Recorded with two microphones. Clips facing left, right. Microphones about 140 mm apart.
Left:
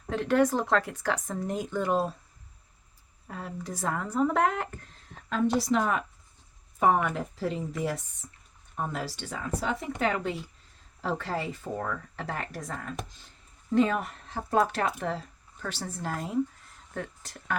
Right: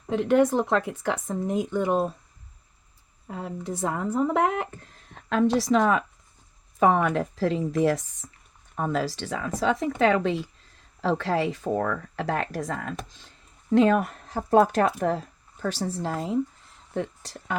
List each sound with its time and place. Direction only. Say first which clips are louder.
0.1 s speech: right 4 dB; 20° right (ahead or behind)
3.2 s speech: right 5 dB; 20° right (ahead or behind)
5.5 s speech: right 5 dB; 90° right
13.7 s speech: right 5 dB; 60° right (ahead or behind)
14.3 s a woman's voice: right 6 dB; 40° right (ahead or behind)